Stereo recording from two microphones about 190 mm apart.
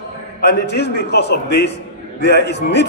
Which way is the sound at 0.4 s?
60° left (ahead or behind).